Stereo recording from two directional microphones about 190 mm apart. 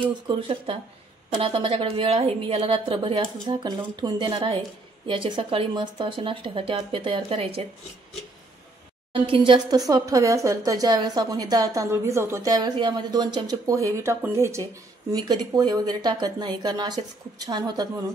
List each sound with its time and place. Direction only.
0.3 s speech: 30° right (ahead or behind)
9.1 s speech: 25° right (ahead or behind)